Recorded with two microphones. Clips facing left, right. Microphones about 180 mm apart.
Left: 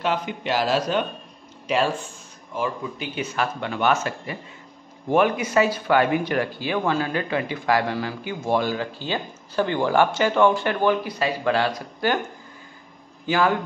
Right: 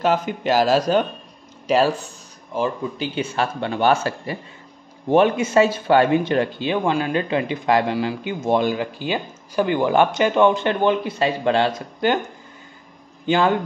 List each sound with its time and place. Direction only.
0.0 s a man's voice: 45° right (ahead or behind); by 12.2 s 20° right (ahead or behind)
13.3 s a man's voice: 25° right (ahead or behind)